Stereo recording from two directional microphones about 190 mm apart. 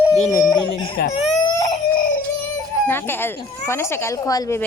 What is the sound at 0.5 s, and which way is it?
Chicken, 25° left (ahead or behind).